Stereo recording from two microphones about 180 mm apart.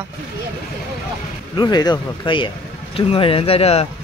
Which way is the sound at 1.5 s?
25° left (ahead or behind).